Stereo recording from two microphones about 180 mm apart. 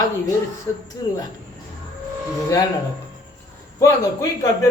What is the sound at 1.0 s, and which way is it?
Speech, 25° left (ahead or behind).